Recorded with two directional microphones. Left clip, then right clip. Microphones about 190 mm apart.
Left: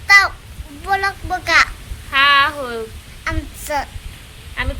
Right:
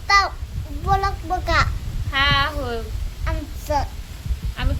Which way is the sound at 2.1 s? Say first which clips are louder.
Left 7 dB; 15° left (ahead or behind).